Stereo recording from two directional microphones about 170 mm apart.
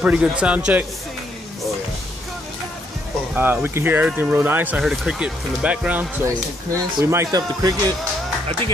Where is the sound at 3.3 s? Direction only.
10° right (ahead or behind).